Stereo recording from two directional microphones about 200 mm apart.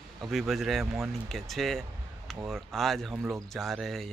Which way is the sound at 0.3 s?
Centre (ahead or behind).